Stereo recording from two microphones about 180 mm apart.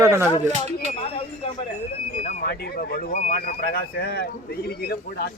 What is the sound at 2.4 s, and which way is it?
Speech, 60° left (ahead or behind).